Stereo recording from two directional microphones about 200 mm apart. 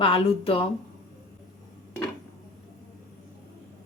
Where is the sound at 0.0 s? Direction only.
25° left (ahead or behind).